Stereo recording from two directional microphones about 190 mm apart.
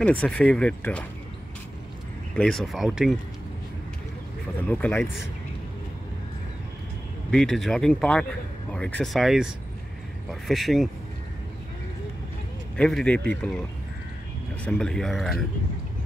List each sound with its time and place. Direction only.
0.0 s speech: 5° left (ahead or behind)
2.3 s speech: 5° left (ahead or behind)
4.6 s speech: 5° left (ahead or behind)
7.2 s speech: centre (ahead or behind)
12.7 s speech: 5° left (ahead or behind)